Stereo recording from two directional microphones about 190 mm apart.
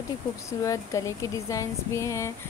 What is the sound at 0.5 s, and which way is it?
Speech, 15° left (ahead or behind).